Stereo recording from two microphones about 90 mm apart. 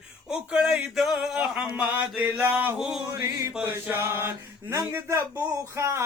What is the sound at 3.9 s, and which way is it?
Male singing, 25° right (ahead or behind).